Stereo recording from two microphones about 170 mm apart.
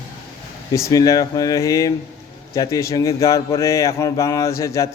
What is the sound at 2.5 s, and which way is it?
Speech, 20° left (ahead or behind).